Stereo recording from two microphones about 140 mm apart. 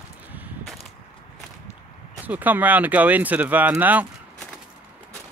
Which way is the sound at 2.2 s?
10° right (ahead or behind).